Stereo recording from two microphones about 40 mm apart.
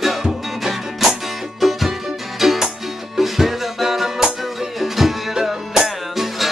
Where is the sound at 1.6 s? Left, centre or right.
Centre.